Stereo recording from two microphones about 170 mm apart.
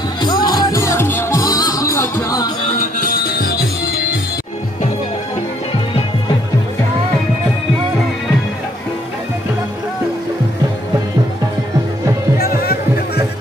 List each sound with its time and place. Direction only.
0.2 s music: 25° left (ahead or behind)
2.8 s music: 55° left (ahead or behind)
12.4 s music: 65° left (ahead or behind)